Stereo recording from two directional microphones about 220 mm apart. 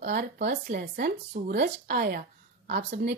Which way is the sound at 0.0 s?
50° right (ahead or behind).